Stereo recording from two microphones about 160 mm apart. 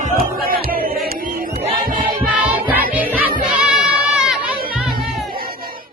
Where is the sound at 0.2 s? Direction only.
70° right (ahead or behind).